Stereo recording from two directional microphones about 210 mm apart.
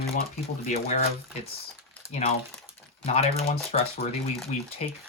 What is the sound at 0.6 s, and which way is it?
Speech, 30° left (ahead or behind).